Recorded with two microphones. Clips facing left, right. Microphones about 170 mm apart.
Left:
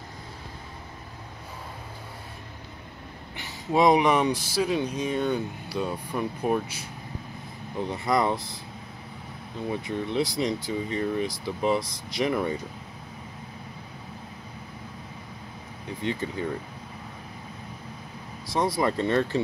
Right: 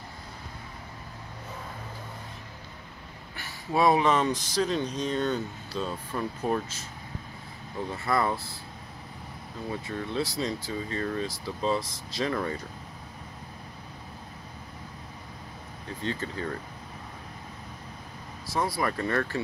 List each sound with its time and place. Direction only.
3.3 s speech: 20° left (ahead or behind)
9.6 s speech: 20° left (ahead or behind)
16.0 s speech: 15° left (ahead or behind)
18.5 s speech: 20° left (ahead or behind)